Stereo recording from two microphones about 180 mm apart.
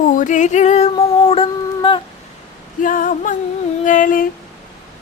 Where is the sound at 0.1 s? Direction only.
45° left (ahead or behind); by 2.0 s 30° left (ahead or behind).